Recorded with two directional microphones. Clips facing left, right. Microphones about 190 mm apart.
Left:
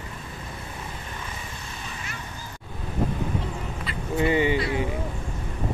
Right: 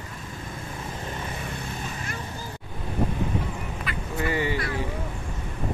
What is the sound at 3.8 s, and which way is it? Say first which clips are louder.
Speech: left 5 dB; 20° left (ahead or behind).